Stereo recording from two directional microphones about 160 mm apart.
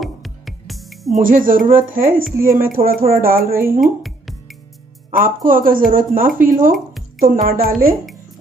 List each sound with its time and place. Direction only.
0.0 s music: centre (ahead or behind)
1.2 s speech: 60° right (ahead or behind)
3.8 s music: centre (ahead or behind)
5.1 s speech: 60° right (ahead or behind)